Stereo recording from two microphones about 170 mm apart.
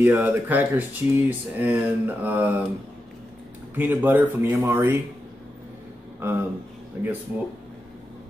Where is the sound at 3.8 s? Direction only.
10° right (ahead or behind).